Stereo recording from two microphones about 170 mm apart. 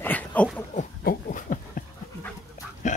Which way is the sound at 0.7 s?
50° left (ahead or behind).